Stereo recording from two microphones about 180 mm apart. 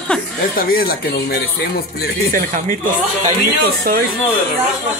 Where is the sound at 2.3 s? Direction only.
50° right (ahead or behind).